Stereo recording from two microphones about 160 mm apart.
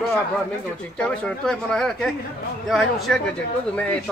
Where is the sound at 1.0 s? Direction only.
5° left (ahead or behind).